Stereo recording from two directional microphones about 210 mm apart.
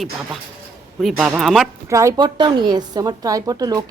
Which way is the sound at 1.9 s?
15° right (ahead or behind).